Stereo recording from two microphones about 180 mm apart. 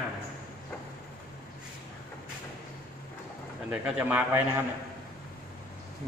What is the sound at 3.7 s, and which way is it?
Speech, 10° right (ahead or behind).